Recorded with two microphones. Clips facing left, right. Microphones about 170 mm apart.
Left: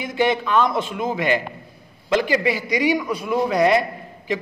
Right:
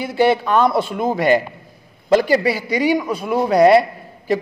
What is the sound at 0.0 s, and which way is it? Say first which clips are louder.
Speech: right 4 dB; 35° right (ahead or behind).